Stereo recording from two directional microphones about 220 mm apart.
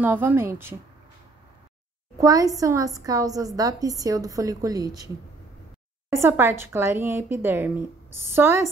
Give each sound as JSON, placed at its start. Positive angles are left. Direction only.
{"t": 0.0, "sound": "a woman's voice", "side_deg": -10}
{"t": 2.1, "sound": "a woman's voice", "side_deg": -15}